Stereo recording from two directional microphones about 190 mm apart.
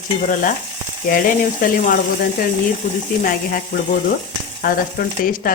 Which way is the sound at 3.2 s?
50° left (ahead or behind).